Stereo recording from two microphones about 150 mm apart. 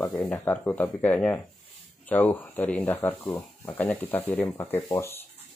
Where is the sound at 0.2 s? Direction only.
10° left (ahead or behind).